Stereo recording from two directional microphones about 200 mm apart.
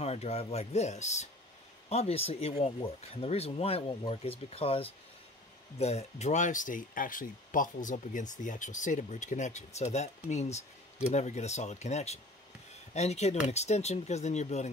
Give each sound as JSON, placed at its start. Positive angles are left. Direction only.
{"t": 0.0, "sound": "speech", "side_deg": 30}